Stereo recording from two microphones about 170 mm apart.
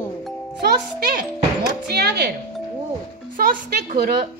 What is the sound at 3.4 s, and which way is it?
Speech, 60° right (ahead or behind).